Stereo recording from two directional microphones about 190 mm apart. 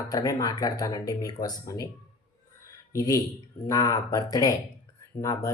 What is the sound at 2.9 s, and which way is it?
Speech, 15° left (ahead or behind).